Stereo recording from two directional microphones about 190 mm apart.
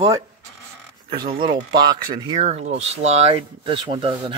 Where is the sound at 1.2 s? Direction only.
25° right (ahead or behind).